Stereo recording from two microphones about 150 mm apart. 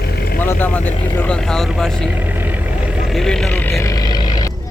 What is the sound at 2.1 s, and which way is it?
Speech, 10° right (ahead or behind).